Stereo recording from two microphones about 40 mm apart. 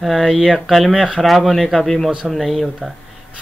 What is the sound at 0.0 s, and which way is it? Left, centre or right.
Speech, centre.